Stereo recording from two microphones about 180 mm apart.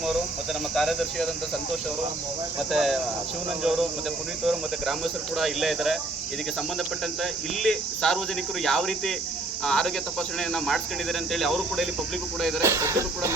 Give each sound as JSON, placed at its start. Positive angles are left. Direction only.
{"t": 0.7, "sound": "speech", "side_deg": 0}
{"t": 2.6, "sound": "speech", "side_deg": 0}
{"t": 7.2, "sound": "speech", "side_deg": 0}
{"t": 12.6, "sound": "speech", "side_deg": -15}